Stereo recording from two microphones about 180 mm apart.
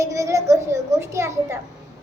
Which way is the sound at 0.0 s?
15° right (ahead or behind).